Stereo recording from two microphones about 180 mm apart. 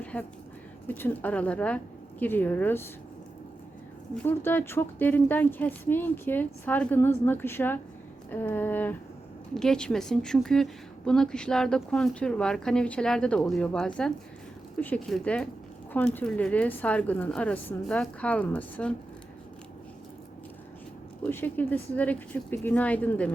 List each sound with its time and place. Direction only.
0.0 s a sound: 10° left (ahead or behind)
0.9 s speech: 10° left (ahead or behind)
4.1 s a woman's voice: 10° left (ahead or behind)
21.2 s speech: 10° left (ahead or behind)